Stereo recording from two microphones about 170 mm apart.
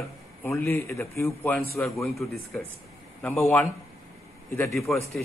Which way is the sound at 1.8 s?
Centre (ahead or behind).